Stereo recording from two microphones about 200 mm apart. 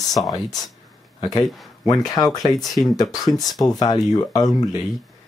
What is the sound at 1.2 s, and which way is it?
Speech, 20° left (ahead or behind).